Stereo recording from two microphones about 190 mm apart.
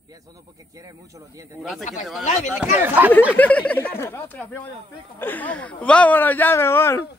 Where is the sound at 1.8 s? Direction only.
40° left (ahead or behind).